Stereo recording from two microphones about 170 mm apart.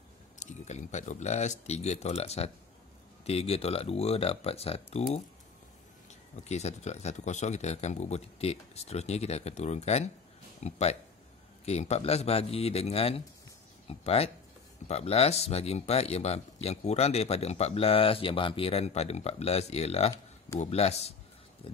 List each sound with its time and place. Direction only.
0.4 s speech: 45° left (ahead or behind)
6.3 s speech: 40° left (ahead or behind)